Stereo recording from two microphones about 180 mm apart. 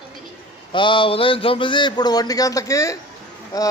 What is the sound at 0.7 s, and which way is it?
A man's voice, 25° left (ahead or behind).